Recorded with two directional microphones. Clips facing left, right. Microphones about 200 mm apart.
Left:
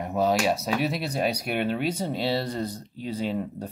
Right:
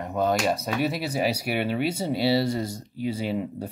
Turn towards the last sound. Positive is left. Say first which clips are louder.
# right 1 dB
turn(degrees=-10)  # may be behind; listen again after turning